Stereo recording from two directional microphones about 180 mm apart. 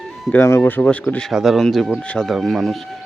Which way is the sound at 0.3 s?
15° left (ahead or behind).